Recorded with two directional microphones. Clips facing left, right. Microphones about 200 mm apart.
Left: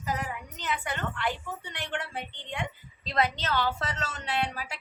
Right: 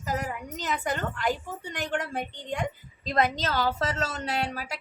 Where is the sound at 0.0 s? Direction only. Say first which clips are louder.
Right 2 dB; 45° right (ahead or behind).